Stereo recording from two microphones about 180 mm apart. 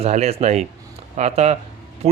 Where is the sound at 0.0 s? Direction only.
35° right (ahead or behind).